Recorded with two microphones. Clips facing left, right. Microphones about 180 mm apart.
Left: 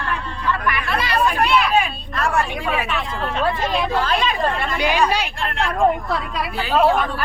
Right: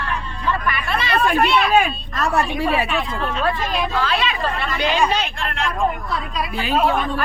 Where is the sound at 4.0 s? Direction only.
45° left (ahead or behind).